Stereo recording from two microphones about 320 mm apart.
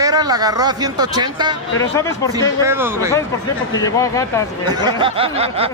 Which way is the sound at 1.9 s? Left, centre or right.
Centre.